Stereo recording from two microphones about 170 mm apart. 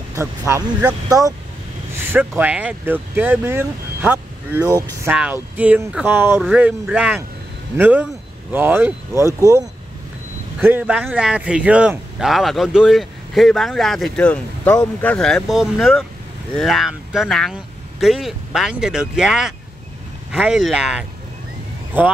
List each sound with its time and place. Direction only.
0.1 s speech: 15° right (ahead or behind)
2.1 s speech: 10° right (ahead or behind)
10.6 s a man's voice: 10° right (ahead or behind)